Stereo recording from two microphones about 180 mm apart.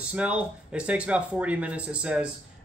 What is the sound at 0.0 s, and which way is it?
Speech, 5° right (ahead or behind).